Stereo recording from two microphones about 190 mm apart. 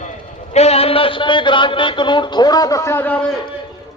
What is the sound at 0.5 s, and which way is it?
Speech, 35° left (ahead or behind).